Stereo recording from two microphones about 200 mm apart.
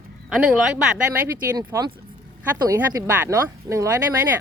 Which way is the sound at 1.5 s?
20° right (ahead or behind).